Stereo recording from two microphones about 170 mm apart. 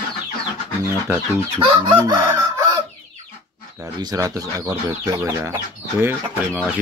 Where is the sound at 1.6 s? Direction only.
30° right (ahead or behind).